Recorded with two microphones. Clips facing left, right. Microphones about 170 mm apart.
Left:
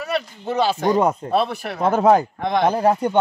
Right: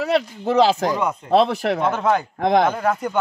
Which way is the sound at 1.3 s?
90° right.